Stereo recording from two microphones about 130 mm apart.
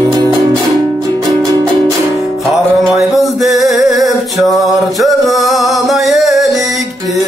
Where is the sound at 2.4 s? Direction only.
Centre (ahead or behind).